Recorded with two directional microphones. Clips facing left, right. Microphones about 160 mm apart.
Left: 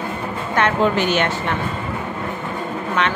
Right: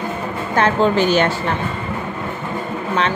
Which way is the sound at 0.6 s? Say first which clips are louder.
Right 2 dB; 35° right (ahead or behind).